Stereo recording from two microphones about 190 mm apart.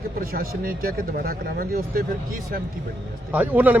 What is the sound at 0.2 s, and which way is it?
Speech, 50° right (ahead or behind).